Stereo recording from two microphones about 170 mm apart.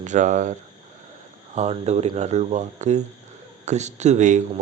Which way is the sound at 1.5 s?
40° right (ahead or behind).